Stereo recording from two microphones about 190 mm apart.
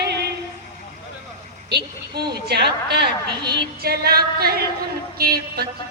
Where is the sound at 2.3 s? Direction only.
60° right (ahead or behind).